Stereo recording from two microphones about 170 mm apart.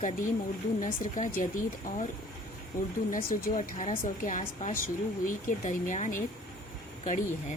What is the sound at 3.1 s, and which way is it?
Speech, 55° left (ahead or behind).